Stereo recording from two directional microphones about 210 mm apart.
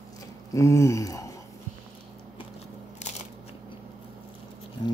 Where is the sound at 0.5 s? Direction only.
15° left (ahead or behind).